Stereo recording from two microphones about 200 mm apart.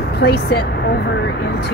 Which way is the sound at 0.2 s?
55° left (ahead or behind).